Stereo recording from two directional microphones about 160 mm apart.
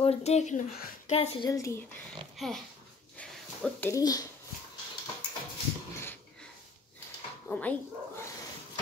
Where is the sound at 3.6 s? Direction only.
10° left (ahead or behind).